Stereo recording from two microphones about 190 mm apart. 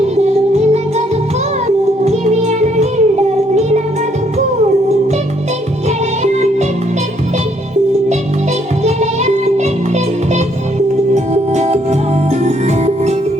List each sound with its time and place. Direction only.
0.2 s music: 35° right (ahead or behind)
6.2 s music: 35° right (ahead or behind)
8.8 s music: 35° right (ahead or behind)
11.1 s music: 35° right (ahead or behind)